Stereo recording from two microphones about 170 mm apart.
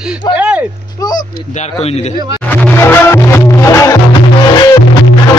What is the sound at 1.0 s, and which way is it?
Speech, 25° left (ahead or behind).